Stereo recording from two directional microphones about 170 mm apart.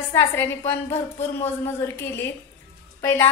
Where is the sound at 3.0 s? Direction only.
15° left (ahead or behind).